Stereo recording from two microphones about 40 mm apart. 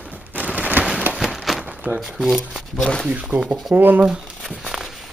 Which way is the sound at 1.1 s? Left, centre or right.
Centre.